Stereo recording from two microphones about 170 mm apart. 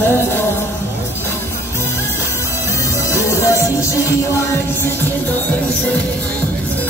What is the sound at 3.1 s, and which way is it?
Music, 15° left (ahead or behind).